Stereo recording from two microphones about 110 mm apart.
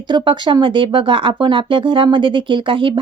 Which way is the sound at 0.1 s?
45° right (ahead or behind).